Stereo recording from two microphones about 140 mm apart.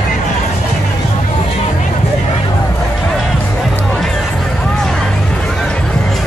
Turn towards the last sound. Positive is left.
turn(degrees=5)  # may be behind; listen again after turning